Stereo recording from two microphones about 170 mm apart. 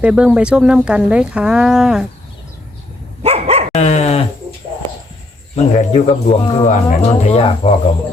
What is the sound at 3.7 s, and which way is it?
Dog, 40° left (ahead or behind).